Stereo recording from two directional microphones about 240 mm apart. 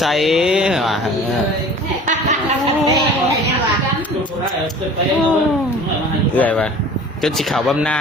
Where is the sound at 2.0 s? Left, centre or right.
Right.